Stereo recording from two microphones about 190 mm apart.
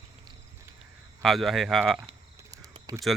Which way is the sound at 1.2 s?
Centre (ahead or behind).